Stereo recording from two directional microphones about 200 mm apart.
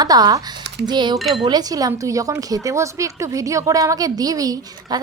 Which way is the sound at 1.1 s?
Centre (ahead or behind).